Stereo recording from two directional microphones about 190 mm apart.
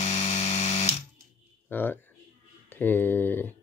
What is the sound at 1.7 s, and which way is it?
Speech, 10° left (ahead or behind).